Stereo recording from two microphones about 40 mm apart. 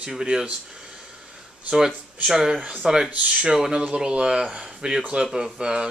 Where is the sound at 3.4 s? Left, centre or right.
Centre.